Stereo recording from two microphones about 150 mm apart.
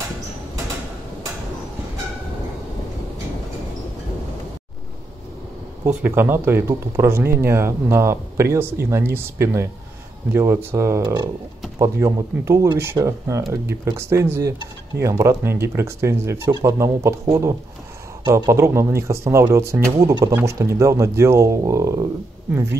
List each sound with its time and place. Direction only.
5.9 s speech: 10° right (ahead or behind)